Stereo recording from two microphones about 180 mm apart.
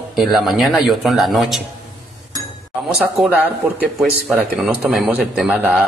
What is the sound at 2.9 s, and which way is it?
Speech, 5° right (ahead or behind).